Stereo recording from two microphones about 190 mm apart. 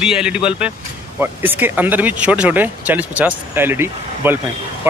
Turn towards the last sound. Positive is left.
turn(degrees=-10)  # may be behind; listen again after turning